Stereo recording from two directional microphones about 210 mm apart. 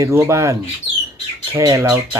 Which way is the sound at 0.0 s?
15° right (ahead or behind).